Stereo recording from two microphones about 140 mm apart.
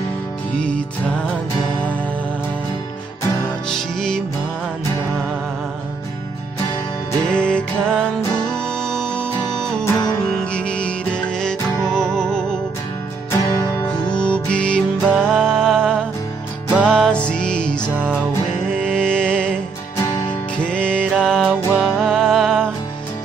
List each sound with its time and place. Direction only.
0.6 s music: 10° left (ahead or behind)
3.6 s music: 5° left (ahead or behind)
7.2 s music: 10° left (ahead or behind)
9.8 s music: 25° left (ahead or behind)
10.2 s music: 5° left (ahead or behind)
13.3 s music: 25° left (ahead or behind)
14.1 s music: 10° left (ahead or behind)
16.7 s music: 10° right (ahead or behind)
17.0 s music: 5° left (ahead or behind)
20.6 s music: 10° left (ahead or behind)